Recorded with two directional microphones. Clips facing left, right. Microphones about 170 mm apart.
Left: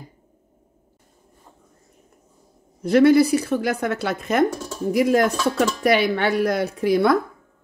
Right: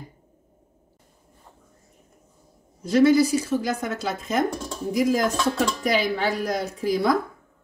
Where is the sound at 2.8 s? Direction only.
60° left (ahead or behind).